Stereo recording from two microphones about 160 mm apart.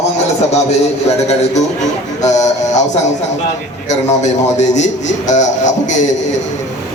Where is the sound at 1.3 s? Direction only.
45° left (ahead or behind).